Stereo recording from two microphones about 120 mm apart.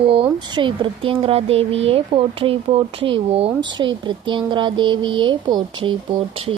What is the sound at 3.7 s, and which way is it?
Speech, 45° right (ahead or behind).